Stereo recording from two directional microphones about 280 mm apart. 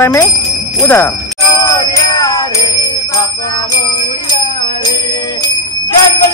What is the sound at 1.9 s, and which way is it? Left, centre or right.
Music, centre.